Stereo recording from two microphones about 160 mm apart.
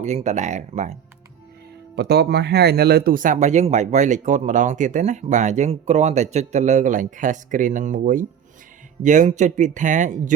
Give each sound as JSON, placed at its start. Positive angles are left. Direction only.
{"t": 0.0, "sound": "speech", "side_deg": -45}
{"t": 2.0, "sound": "speech", "side_deg": -90}